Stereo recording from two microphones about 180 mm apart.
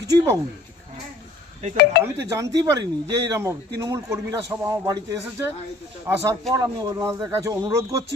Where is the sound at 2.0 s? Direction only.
15° right (ahead or behind).